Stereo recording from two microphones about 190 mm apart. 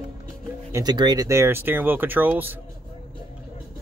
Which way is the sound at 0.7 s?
20° right (ahead or behind).